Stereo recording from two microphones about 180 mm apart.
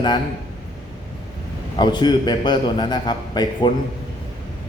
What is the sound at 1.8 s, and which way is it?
A man's voice, 25° left (ahead or behind).